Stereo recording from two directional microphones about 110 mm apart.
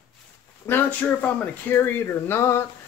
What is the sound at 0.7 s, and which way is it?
Speech, 25° left (ahead or behind).